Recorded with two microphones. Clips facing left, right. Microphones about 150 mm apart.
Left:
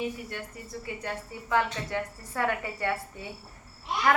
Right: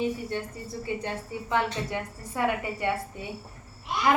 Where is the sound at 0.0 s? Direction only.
30° right (ahead or behind).